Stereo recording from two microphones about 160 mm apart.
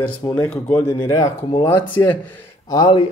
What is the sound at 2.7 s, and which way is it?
Speech, 30° left (ahead or behind).